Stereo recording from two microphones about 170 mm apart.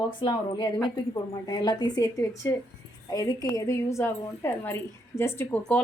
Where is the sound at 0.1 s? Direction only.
25° left (ahead or behind).